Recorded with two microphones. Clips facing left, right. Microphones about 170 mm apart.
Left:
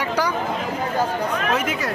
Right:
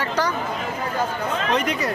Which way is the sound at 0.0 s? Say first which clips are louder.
Left 1 dB; 10° left (ahead or behind).